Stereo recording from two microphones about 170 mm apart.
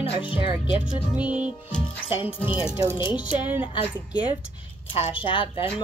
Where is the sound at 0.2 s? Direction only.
30° left (ahead or behind).